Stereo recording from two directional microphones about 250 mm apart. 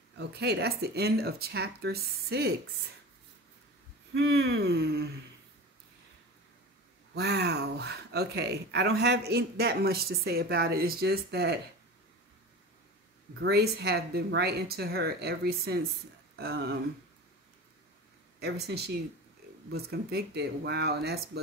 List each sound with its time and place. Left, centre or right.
0.2 s speech: right
4.1 s speech: right
7.2 s speech: right
13.4 s speech: right
18.4 s speech: right